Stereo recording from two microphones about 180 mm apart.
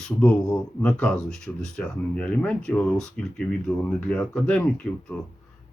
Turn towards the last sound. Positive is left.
turn(degrees=5)  # may be behind; listen again after turning